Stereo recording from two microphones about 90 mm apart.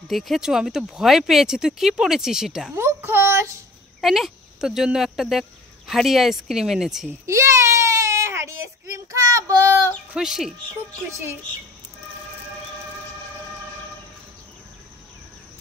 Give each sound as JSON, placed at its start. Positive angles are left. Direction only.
{"t": 0.1, "sound": "speech", "side_deg": 0}
{"t": 2.7, "sound": "a child's voice", "side_deg": -25}
{"t": 4.0, "sound": "speech", "side_deg": -5}
{"t": 7.2, "sound": "a sound", "side_deg": -35}
{"t": 10.1, "sound": "speech", "side_deg": -5}